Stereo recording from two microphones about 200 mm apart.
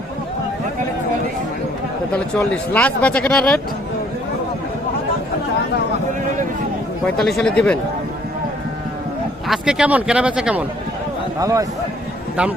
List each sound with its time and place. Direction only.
2.1 s speech: 5° left (ahead or behind)
7.0 s speech: centre (ahead or behind)
9.5 s speech: 5° right (ahead or behind)
11.3 s a man's voice: 15° right (ahead or behind)